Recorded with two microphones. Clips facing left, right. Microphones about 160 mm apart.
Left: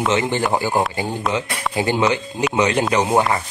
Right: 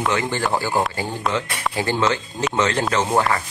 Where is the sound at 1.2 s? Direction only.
Centre (ahead or behind).